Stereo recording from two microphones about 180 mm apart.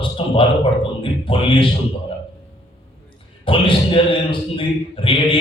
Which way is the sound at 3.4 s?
30° left (ahead or behind).